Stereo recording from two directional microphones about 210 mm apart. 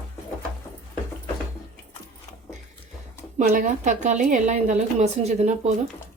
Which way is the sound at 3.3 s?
35° right (ahead or behind).